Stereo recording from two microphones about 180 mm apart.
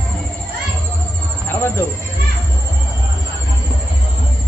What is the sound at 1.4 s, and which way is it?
Cricket, 15° left (ahead or behind).